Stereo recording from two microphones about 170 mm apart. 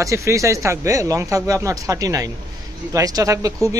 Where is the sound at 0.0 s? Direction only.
15° right (ahead or behind).